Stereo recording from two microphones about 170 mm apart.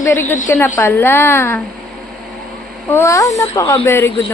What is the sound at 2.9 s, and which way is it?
Speech, 15° left (ahead or behind).